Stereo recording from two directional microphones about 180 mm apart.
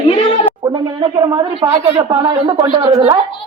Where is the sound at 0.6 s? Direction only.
20° right (ahead or behind).